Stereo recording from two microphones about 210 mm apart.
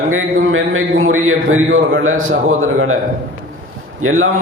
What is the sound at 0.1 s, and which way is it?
A man's voice, 75° right (ahead or behind).